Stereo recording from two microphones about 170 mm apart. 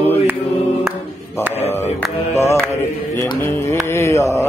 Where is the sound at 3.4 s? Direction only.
15° left (ahead or behind).